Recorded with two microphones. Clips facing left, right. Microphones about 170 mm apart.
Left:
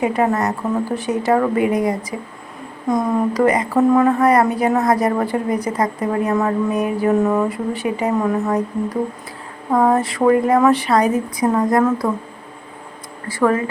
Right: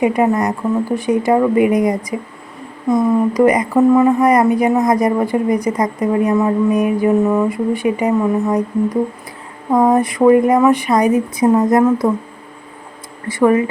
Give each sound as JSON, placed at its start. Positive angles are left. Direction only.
{"t": 0.0, "sound": "speech", "side_deg": -10}
{"t": 13.2, "sound": "speech", "side_deg": -20}